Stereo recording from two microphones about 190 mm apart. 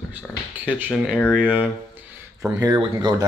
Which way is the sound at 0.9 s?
5° left (ahead or behind).